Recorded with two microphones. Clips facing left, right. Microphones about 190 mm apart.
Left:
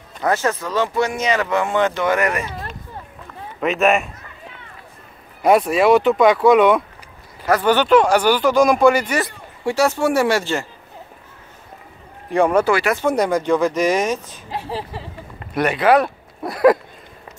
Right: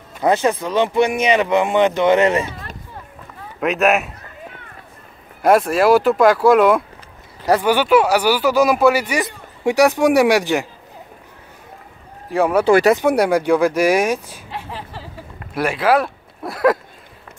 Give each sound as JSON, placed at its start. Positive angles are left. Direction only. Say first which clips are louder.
{"t": 0.2, "sound": "speech", "louder": "right 3 dB", "side_deg": -15}
{"t": 3.6, "sound": "speech", "louder": "even", "side_deg": 0}
{"t": 5.4, "sound": "speech", "louder": "right 1 dB", "side_deg": 0}
{"t": 12.3, "sound": "speech", "louder": "right 1 dB", "side_deg": -5}
{"t": 14.5, "sound": "a sound", "louder": "left 4 dB", "side_deg": 35}
{"t": 14.9, "sound": "a sound", "louder": "left 1 dB", "side_deg": 0}